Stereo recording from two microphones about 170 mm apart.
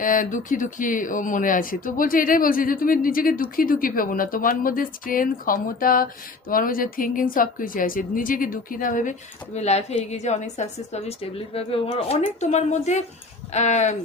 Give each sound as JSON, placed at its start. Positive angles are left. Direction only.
{"t": 0.0, "sound": "a woman's voice", "side_deg": 50}
{"t": 9.6, "sound": "a woman's voice", "side_deg": 40}